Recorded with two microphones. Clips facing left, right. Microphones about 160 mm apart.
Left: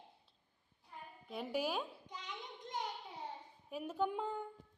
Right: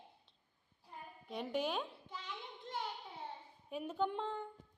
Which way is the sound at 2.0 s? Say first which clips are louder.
Right 1 dB; 15° left (ahead or behind).